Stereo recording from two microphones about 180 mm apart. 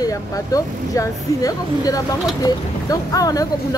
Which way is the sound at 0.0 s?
20° left (ahead or behind).